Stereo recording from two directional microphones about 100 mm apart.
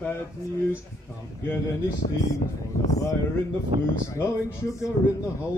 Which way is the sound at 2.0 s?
65° left (ahead or behind).